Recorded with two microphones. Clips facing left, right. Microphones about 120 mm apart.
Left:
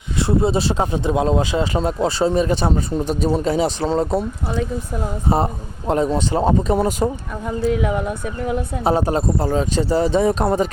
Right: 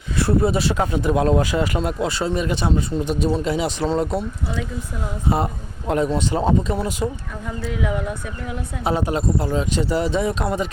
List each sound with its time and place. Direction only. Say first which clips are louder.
0.2 s speech: left 1 dB; 20° left (ahead or behind)
6.1 s speech: left 2 dB; 35° left (ahead or behind); by 8.6 s 50° left (ahead or behind)
8.8 s speech: left 2 dB; 35° left (ahead or behind)